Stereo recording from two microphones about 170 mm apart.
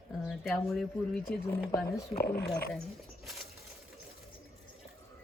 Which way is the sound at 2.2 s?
65° left (ahead or behind).